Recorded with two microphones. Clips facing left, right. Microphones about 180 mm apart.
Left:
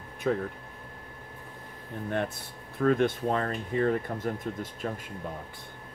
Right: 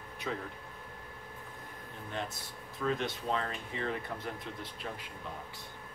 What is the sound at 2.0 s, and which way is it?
Speech, 60° left (ahead or behind).